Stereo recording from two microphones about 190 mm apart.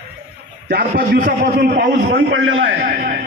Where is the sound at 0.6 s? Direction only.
50° right (ahead or behind); by 2.9 s 70° right (ahead or behind).